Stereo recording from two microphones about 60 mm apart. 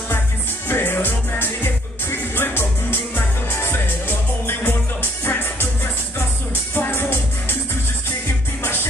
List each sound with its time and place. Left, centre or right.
0.7 s music: left
6.7 s music: left